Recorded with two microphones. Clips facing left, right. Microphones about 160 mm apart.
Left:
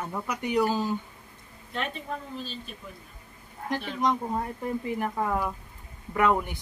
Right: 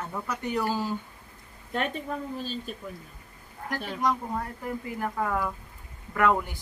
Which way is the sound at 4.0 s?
20° left (ahead or behind).